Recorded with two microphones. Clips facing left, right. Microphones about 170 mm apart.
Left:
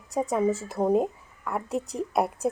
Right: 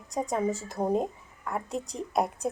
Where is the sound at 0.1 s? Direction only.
5° left (ahead or behind).